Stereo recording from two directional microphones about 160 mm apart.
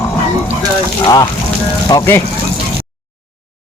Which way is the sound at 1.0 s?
25° left (ahead or behind).